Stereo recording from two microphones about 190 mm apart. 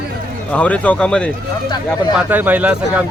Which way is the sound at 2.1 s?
10° right (ahead or behind).